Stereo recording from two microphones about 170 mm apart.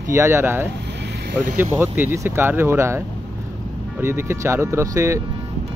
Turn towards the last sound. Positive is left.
turn(degrees=-15)  # may be behind; listen again after turning